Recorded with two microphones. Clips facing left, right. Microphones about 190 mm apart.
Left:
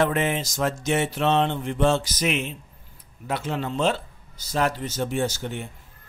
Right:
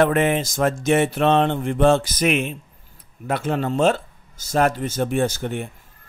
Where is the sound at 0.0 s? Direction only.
55° right (ahead or behind).